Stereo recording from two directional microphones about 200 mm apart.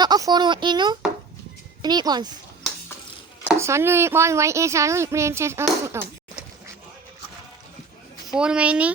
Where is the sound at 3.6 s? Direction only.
15° right (ahead or behind).